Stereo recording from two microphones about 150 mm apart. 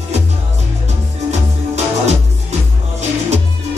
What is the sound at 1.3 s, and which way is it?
Music, 50° right (ahead or behind).